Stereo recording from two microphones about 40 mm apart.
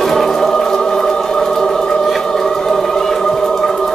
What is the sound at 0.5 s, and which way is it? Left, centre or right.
Music, centre.